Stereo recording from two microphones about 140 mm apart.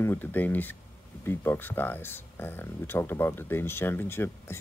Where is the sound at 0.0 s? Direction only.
15° left (ahead or behind).